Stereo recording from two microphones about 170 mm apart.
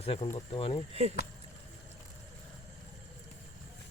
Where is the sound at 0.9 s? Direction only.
35° right (ahead or behind).